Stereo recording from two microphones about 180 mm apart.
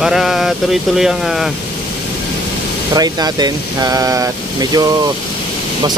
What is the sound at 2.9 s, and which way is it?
Speech, 20° right (ahead or behind).